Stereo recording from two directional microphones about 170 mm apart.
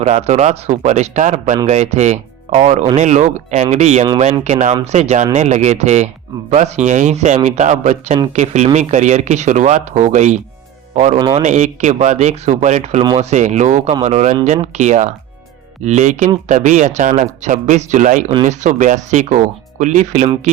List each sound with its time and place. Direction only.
0.0 s speech: 40° right (ahead or behind)
11.2 s speech: 30° right (ahead or behind)
11.4 s speech: 45° right (ahead or behind)